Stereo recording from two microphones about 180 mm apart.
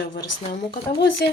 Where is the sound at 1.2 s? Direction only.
65° left (ahead or behind).